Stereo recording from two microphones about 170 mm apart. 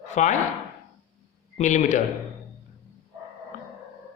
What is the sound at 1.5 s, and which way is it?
Speech, 45° left (ahead or behind).